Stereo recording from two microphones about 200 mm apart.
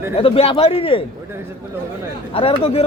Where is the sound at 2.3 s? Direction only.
30° left (ahead or behind).